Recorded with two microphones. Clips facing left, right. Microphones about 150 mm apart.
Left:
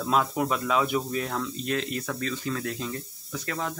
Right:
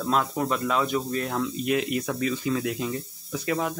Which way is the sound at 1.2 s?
10° right (ahead or behind).